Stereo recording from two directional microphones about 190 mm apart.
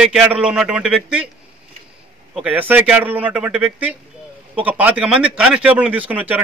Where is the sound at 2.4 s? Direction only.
10° right (ahead or behind).